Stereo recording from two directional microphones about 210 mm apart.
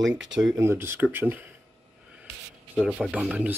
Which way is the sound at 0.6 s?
10° right (ahead or behind).